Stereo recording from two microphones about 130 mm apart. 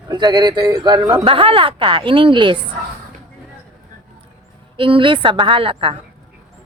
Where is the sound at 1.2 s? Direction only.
45° right (ahead or behind).